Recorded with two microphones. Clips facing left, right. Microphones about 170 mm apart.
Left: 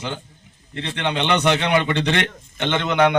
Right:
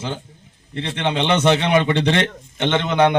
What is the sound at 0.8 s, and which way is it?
A man's voice, 25° right (ahead or behind).